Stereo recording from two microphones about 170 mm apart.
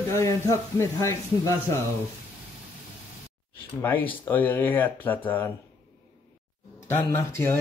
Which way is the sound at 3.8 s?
10° left (ahead or behind).